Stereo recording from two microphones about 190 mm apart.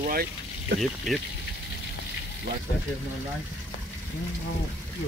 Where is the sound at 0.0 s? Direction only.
55° right (ahead or behind).